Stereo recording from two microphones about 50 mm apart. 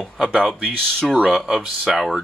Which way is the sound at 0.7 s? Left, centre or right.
Centre.